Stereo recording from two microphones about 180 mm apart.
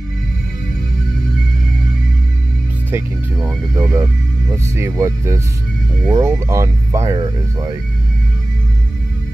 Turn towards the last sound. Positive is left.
turn(degrees=-20)  # may be behind; listen again after turning